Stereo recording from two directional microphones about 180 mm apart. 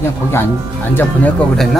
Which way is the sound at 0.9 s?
10° left (ahead or behind).